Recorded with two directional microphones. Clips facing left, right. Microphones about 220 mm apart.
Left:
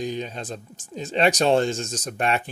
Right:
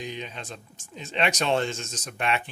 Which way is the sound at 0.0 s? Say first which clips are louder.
Left 7 dB; 40° left (ahead or behind).